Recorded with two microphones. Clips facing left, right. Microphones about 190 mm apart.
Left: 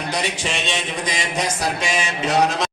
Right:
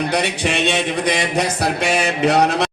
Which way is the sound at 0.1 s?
60° right (ahead or behind).